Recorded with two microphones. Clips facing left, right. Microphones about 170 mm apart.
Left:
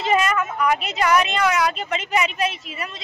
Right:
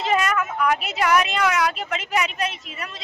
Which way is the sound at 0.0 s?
Centre (ahead or behind).